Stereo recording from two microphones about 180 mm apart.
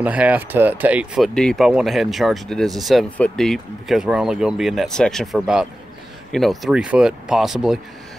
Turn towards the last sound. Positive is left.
turn(degrees=0)  # may be behind; listen again after turning